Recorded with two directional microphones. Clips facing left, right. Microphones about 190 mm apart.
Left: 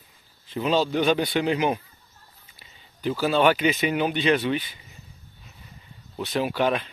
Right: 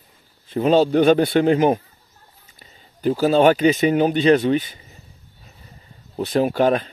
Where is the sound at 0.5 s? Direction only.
50° right (ahead or behind).